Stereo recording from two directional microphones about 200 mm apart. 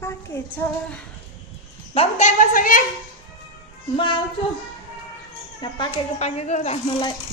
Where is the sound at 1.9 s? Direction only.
35° left (ahead or behind).